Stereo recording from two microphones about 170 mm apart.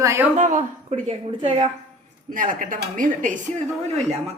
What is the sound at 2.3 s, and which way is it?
A woman's voice, 55° right (ahead or behind).